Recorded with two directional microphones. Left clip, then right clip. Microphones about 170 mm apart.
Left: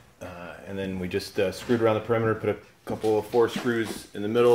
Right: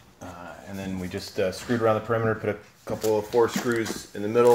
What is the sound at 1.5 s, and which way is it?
Speech, 25° left (ahead or behind).